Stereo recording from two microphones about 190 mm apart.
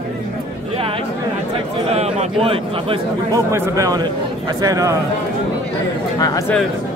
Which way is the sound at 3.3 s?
15° right (ahead or behind).